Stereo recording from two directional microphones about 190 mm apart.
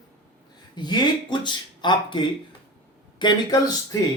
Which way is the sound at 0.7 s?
20° left (ahead or behind).